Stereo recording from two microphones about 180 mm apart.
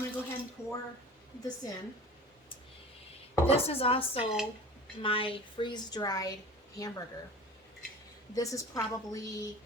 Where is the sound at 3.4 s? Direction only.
35° left (ahead or behind).